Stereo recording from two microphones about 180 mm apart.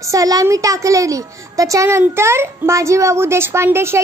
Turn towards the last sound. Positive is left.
turn(degrees=-15)  # may be behind; listen again after turning